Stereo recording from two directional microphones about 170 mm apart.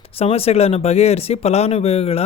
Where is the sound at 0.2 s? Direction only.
35° left (ahead or behind).